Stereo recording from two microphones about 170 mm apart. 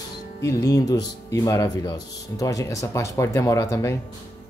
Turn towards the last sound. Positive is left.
turn(degrees=20)  # may be behind; listen again after turning